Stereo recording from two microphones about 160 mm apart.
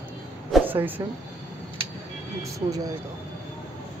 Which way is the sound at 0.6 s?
10° right (ahead or behind).